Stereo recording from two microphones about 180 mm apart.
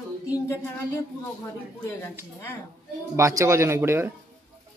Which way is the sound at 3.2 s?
15° right (ahead or behind).